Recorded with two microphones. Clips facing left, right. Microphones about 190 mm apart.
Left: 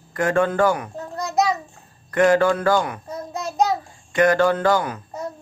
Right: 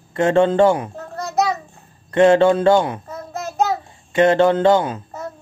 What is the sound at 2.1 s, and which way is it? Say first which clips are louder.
Speech: right 4 dB; 25° right (ahead or behind).